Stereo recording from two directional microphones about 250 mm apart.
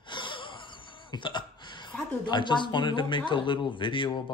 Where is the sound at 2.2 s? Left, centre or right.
Centre.